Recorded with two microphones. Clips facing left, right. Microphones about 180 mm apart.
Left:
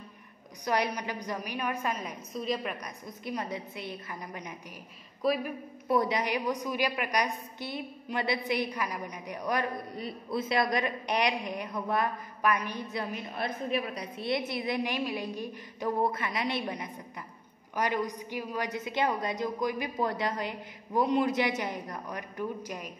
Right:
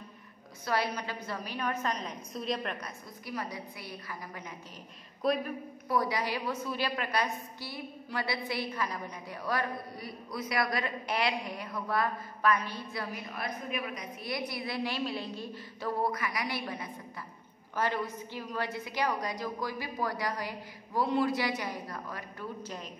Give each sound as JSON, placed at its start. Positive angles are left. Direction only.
{"t": 0.7, "sound": "a woman's voice", "side_deg": 15}
{"t": 3.3, "sound": "a woman's voice", "side_deg": 20}
{"t": 5.2, "sound": "speech", "side_deg": 5}
{"t": 5.9, "sound": "a woman's voice", "side_deg": 20}